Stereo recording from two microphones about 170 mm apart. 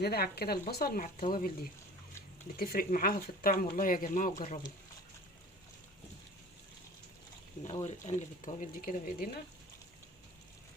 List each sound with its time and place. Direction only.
0.0 s speech: 70° left (ahead or behind)
2.6 s speech: 60° left (ahead or behind)
7.9 s speech: 45° left (ahead or behind)